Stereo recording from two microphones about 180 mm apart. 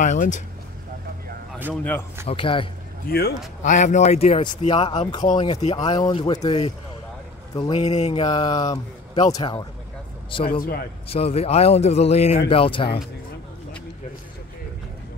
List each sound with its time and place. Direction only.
0.0 s speech: 45° left (ahead or behind)
2.2 s speech: 30° left (ahead or behind)
3.1 s a man's voice: 60° left (ahead or behind)
3.6 s speech: 45° left (ahead or behind)
5.8 s speech: 25° left (ahead or behind)
7.7 s speech: 35° left (ahead or behind)
8.3 s speech: 25° left (ahead or behind)